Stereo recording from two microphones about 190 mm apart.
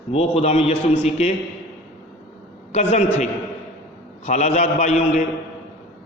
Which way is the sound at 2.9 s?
35° left (ahead or behind).